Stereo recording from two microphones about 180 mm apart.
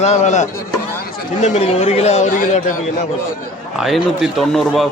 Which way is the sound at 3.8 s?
Centre (ahead or behind).